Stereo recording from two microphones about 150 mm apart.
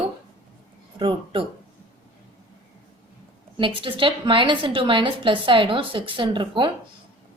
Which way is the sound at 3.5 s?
35° right (ahead or behind).